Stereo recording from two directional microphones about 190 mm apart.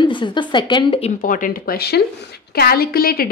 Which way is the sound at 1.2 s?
45° left (ahead or behind).